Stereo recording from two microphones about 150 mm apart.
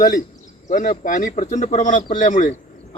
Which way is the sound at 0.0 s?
60° left (ahead or behind).